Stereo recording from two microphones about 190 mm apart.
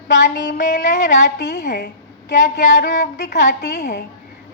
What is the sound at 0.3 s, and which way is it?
Speech, 60° left (ahead or behind).